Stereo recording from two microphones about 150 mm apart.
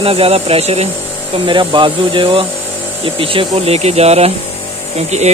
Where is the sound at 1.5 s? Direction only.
35° right (ahead or behind).